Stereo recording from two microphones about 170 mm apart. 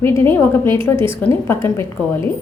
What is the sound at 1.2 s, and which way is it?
Speech, 15° left (ahead or behind).